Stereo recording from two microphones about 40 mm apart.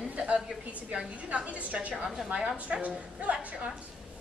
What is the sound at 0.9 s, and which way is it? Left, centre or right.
A woman's voice, right.